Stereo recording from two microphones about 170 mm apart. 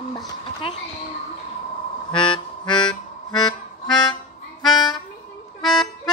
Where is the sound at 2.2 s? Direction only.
30° left (ahead or behind).